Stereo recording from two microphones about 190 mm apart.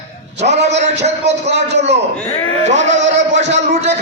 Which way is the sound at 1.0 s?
35° right (ahead or behind).